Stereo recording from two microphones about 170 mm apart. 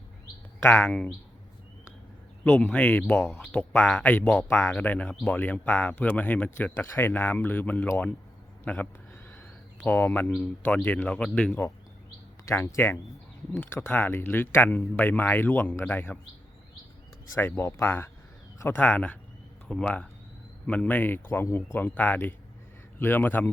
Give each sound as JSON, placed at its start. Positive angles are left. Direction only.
{"t": 0.6, "sound": "speech", "side_deg": 15}
{"t": 2.4, "sound": "speech", "side_deg": 10}
{"t": 17.5, "sound": "speech", "side_deg": 15}